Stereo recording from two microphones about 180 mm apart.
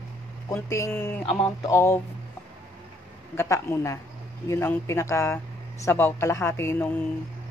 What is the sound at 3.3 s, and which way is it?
Speech, 15° left (ahead or behind).